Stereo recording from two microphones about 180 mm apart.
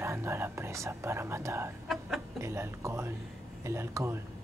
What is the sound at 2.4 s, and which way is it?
Speech, 15° right (ahead or behind).